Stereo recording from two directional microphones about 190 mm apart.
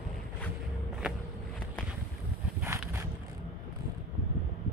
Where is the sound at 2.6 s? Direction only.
10° right (ahead or behind).